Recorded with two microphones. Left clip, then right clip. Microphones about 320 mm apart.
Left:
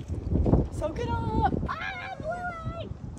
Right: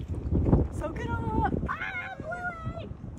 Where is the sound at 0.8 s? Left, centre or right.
Left.